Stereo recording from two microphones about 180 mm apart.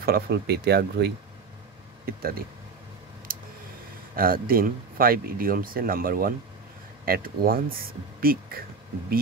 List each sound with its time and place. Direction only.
0.0 s speech: 60° right (ahead or behind)
3.3 s a sound: 50° right (ahead or behind)
4.1 s speech: 55° right (ahead or behind)